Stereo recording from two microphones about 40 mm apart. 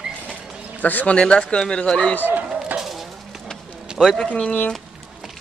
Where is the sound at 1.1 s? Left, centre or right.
Left.